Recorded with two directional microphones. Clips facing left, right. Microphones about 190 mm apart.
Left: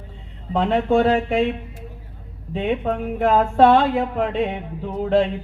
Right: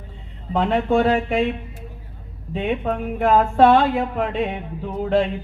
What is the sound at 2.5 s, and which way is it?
Speech, 30° left (ahead or behind).